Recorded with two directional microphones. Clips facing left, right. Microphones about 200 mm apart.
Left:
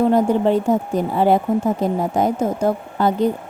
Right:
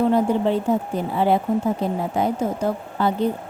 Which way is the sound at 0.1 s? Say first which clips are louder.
Left 3 dB; 45° left (ahead or behind).